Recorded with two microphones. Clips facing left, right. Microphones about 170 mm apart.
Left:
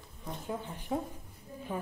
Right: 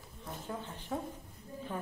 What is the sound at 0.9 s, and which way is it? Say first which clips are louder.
Speech: left 4 dB; 15° left (ahead or behind).